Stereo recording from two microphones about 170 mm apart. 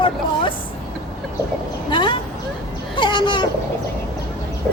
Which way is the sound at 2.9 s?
30° left (ahead or behind).